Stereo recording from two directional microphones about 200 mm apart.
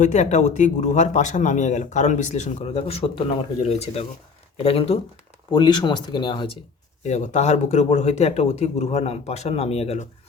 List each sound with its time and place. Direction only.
0.0 s speech: 35° left (ahead or behind)
7.0 s speech: 35° left (ahead or behind)